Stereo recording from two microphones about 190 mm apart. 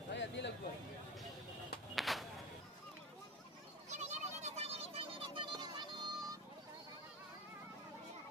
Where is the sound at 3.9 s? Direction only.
35° right (ahead or behind).